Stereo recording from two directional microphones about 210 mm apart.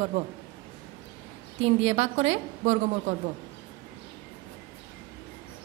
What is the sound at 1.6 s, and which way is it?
A woman's voice, 30° right (ahead or behind).